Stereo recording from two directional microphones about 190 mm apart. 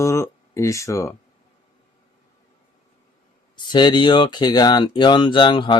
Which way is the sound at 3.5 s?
25° left (ahead or behind).